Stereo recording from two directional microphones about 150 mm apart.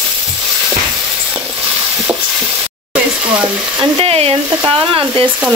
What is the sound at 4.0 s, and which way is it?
Speech, 40° right (ahead or behind).